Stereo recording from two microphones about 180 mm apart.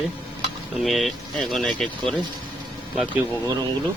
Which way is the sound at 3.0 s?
10° right (ahead or behind).